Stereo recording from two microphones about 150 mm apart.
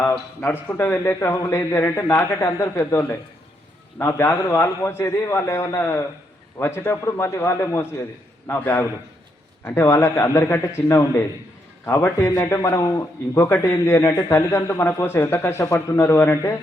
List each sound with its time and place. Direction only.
0.0 s a man's voice: 15° left (ahead or behind)